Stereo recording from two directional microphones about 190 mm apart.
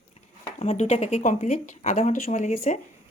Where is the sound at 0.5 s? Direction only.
35° left (ahead or behind).